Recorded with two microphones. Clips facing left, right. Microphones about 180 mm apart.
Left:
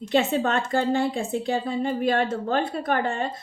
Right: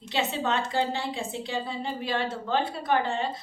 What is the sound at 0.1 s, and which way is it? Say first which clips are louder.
A woman's voice: left 6 dB; 50° left (ahead or behind).